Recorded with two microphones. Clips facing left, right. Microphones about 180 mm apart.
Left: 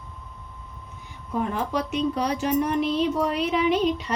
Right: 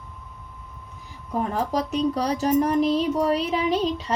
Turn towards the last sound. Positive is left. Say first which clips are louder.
# left 1 dB
turn(degrees=-30)  # may be behind; listen again after turning